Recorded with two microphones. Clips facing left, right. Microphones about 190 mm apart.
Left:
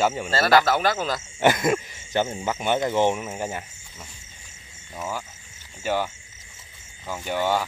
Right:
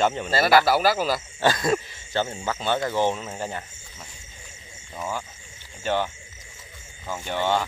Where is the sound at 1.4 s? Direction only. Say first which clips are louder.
Left 3 dB; 20° left (ahead or behind).